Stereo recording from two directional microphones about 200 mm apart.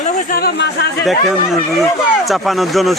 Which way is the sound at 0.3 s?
50° left (ahead or behind).